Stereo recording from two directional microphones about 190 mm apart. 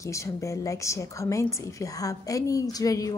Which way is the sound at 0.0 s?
15° left (ahead or behind).